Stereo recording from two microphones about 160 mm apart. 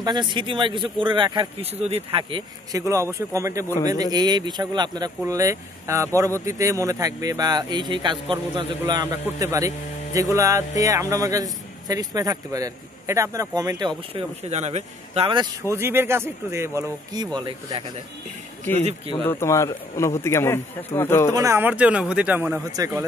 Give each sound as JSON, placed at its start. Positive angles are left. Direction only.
{"t": 0.0, "sound": "speech", "side_deg": -30}
{"t": 2.8, "sound": "a man's voice", "side_deg": -20}
{"t": 14.4, "sound": "a man's voice", "side_deg": -45}
{"t": 15.7, "sound": "speech", "side_deg": -15}
{"t": 18.7, "sound": "a man's voice", "side_deg": -40}
{"t": 19.2, "sound": "a man's voice", "side_deg": 20}
{"t": 21.3, "sound": "speech", "side_deg": -20}
{"t": 22.7, "sound": "a man's voice", "side_deg": -20}